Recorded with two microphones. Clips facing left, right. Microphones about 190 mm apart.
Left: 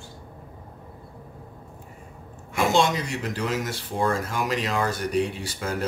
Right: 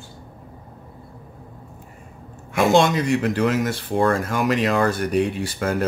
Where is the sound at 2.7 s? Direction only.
60° right (ahead or behind).